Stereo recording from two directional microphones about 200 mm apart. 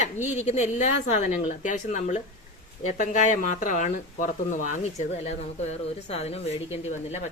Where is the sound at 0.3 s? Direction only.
35° left (ahead or behind).